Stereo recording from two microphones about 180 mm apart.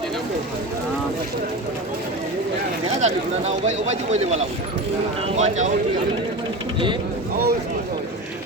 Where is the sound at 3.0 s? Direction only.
40° right (ahead or behind).